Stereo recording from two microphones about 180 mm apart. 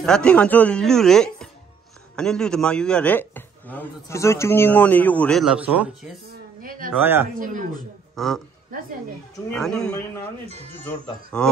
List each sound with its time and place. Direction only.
0.0 s speech: 5° left (ahead or behind)
6.6 s speech: 50° right (ahead or behind)
7.0 s speech: 10° right (ahead or behind)
7.3 s speech: 50° right (ahead or behind)
8.2 s speech: centre (ahead or behind)
9.5 s speech: 5° left (ahead or behind)
10.4 s speech: 35° right (ahead or behind)
11.3 s speech: 5° left (ahead or behind)